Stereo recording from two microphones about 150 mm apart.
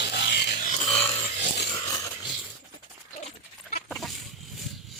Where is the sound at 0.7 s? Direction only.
45° left (ahead or behind).